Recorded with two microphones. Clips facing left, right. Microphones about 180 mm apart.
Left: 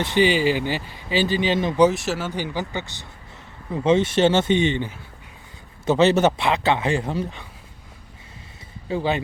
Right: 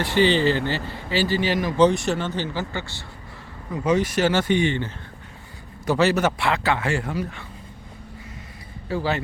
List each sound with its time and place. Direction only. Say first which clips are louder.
0.0 s speech: even; 15° left (ahead or behind)
1.8 s speech: right 1 dB; centre (ahead or behind); by 7.4 s 25° left (ahead or behind)
8.9 s speech: left 2 dB; 20° left (ahead or behind)